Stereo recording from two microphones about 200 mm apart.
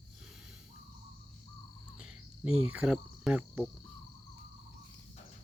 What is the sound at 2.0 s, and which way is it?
Cricket, 5° right (ahead or behind).